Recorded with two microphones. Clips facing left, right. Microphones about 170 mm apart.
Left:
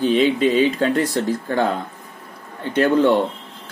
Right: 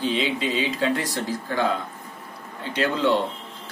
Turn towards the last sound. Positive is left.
turn(degrees=55)  # may be behind; listen again after turning